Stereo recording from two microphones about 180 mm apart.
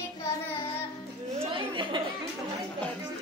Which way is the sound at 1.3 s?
30° right (ahead or behind).